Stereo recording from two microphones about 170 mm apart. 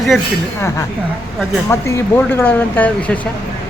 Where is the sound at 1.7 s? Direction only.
15° left (ahead or behind).